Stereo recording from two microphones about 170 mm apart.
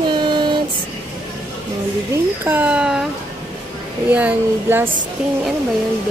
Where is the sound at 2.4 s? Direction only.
10° right (ahead or behind).